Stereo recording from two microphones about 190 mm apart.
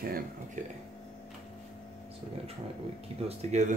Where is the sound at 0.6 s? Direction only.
40° right (ahead or behind).